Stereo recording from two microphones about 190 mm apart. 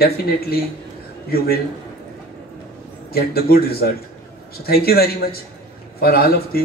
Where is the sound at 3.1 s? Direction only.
55° left (ahead or behind).